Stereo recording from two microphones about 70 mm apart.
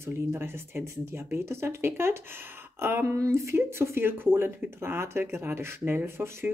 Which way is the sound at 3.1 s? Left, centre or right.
Right.